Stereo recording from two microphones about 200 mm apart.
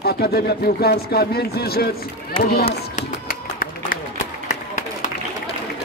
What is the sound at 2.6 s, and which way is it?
Run, 40° left (ahead or behind).